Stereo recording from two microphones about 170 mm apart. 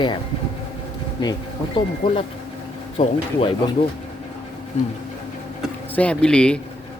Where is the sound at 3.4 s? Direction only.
30° left (ahead or behind).